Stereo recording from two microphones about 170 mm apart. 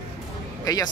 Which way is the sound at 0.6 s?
20° left (ahead or behind).